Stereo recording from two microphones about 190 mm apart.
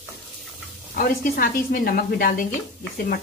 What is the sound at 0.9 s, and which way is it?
Speech, 50° left (ahead or behind).